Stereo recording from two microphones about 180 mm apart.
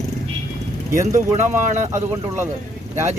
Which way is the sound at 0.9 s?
45° right (ahead or behind).